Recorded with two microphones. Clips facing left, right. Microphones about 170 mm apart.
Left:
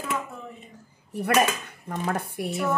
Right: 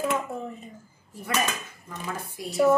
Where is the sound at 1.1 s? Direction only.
65° left (ahead or behind).